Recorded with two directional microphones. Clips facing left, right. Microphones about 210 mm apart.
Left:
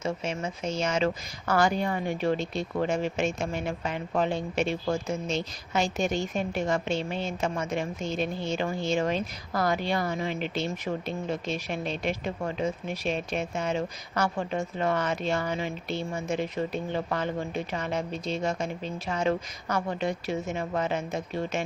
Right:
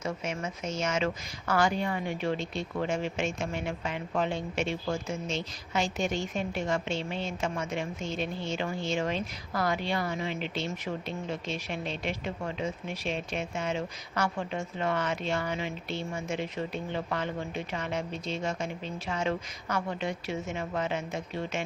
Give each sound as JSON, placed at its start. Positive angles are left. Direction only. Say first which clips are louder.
{"t": 0.0, "sound": "speech", "louder": "left 3 dB", "side_deg": 30}